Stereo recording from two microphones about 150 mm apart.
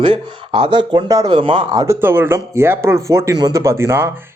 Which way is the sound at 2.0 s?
15° right (ahead or behind).